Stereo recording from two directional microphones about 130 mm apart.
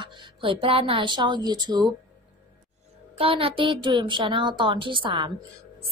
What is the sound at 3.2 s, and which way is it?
A woman's voice, 45° right (ahead or behind).